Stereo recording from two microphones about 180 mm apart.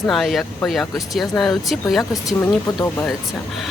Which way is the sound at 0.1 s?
Centre (ahead or behind).